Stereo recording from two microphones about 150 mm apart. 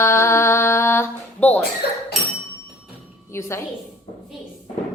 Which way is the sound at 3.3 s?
20° left (ahead or behind).